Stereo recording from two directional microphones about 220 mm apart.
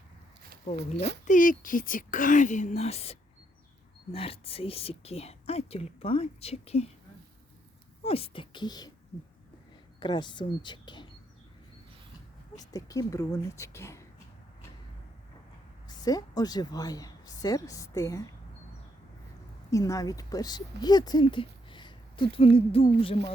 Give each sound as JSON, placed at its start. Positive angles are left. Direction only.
{"t": 1.2, "sound": "speech", "side_deg": 35}
{"t": 8.0, "sound": "speech", "side_deg": 25}
{"t": 10.0, "sound": "speech", "side_deg": 20}
{"t": 12.5, "sound": "speech", "side_deg": 15}
{"t": 15.9, "sound": "a woman's voice", "side_deg": 15}
{"t": 19.7, "sound": "speech", "side_deg": 15}